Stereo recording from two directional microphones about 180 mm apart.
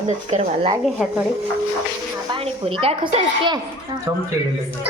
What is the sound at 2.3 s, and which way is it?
A woman's voice, 30° right (ahead or behind).